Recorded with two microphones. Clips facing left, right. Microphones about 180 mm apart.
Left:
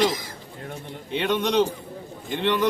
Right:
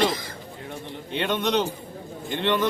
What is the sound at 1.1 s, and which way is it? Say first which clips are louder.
Speech: left 1 dB; 5° left (ahead or behind).